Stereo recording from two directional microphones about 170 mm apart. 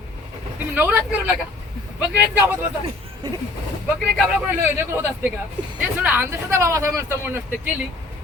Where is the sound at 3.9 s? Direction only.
Centre (ahead or behind).